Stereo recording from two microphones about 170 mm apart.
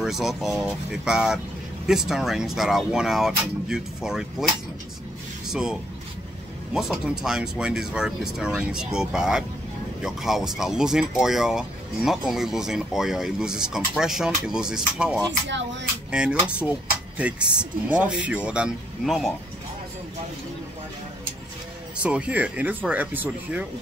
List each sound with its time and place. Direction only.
0.0 s speech: centre (ahead or behind)
5.5 s speech: 5° right (ahead or behind)
15.4 s speech: 90° right
16.1 s speech: 5° right (ahead or behind)
22.0 s speech: 10° right (ahead or behind)